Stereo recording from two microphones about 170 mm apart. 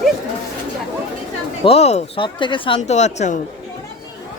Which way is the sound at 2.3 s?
30° left (ahead or behind).